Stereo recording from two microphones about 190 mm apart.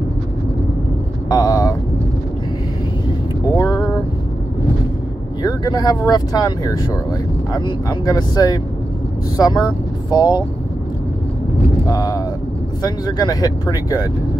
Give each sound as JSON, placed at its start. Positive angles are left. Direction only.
{"t": 1.3, "sound": "speech", "side_deg": 20}
{"t": 3.5, "sound": "a sound", "side_deg": 20}
{"t": 5.4, "sound": "speech", "side_deg": 20}
{"t": 11.9, "sound": "speech", "side_deg": 20}